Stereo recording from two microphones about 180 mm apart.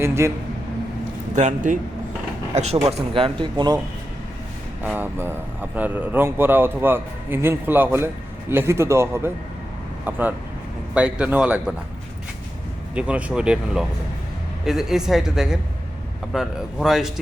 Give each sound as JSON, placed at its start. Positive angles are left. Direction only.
{"t": 0.0, "sound": "a man's voice", "side_deg": -15}
{"t": 1.4, "sound": "a man's voice", "side_deg": -45}
{"t": 4.8, "sound": "a man's voice", "side_deg": -10}
{"t": 12.9, "sound": "a man's voice", "side_deg": -5}